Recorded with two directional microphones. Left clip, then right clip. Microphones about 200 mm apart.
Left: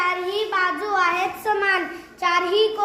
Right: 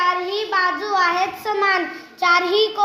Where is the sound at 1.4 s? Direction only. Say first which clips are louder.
Right 2 dB; 40° right (ahead or behind).